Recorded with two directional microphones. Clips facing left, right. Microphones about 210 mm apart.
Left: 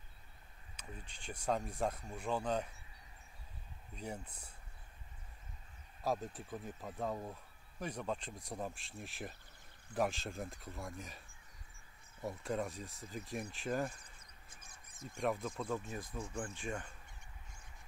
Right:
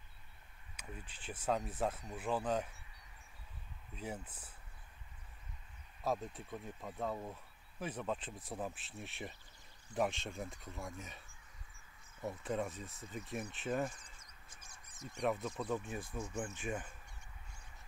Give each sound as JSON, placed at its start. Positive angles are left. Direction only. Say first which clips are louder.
{"t": 0.7, "sound": "speech", "louder": "right 1 dB", "side_deg": -5}
{"t": 3.9, "sound": "speech", "louder": "even", "side_deg": -5}
{"t": 6.0, "sound": "speech", "louder": "even", "side_deg": 0}
{"t": 14.1, "sound": "bird", "louder": "even", "side_deg": 55}
{"t": 15.2, "sound": "speech", "louder": "right 1 dB", "side_deg": 0}